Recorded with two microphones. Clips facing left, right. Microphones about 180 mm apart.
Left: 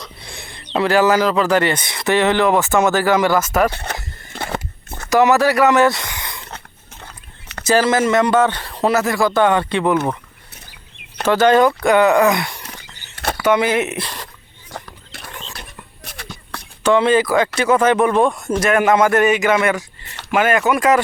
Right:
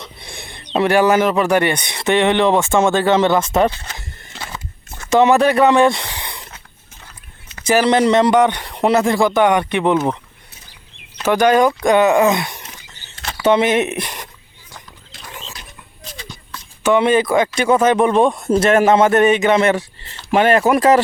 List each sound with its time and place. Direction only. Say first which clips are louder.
0.0 s speech: right 1 dB; 20° right (ahead or behind)
3.7 s a sound: left 4 dB; 60° left (ahead or behind)
5.0 s speech: right 1 dB; 25° right (ahead or behind)
7.0 s biting: left 4 dB; 70° left (ahead or behind)
7.7 s speech: right 2 dB; 15° right (ahead or behind)
11.3 s speech: even; 15° right (ahead or behind)
12.6 s a sound: left 3 dB; 65° left (ahead or behind)
13.4 s speech: right 2 dB; 25° right (ahead or behind)
14.7 s a sound: left 7 dB; 65° left (ahead or behind)
16.0 s shuffle: right 1 dB; 65° left (ahead or behind)
16.9 s speech: even; 20° right (ahead or behind)